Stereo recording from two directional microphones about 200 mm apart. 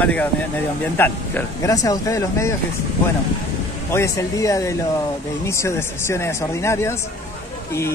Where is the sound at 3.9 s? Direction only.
15° left (ahead or behind).